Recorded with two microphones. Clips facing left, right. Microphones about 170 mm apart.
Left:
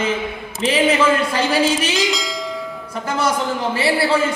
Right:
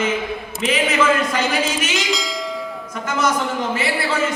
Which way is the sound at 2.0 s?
Centre (ahead or behind).